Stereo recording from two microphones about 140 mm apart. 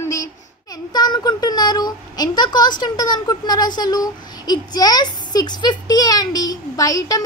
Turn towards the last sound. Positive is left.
turn(degrees=25)  # may be behind; listen again after turning